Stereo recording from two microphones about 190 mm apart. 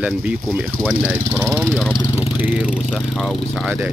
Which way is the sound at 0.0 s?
5° right (ahead or behind).